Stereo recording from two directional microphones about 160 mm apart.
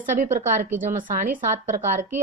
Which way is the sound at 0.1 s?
55° right (ahead or behind).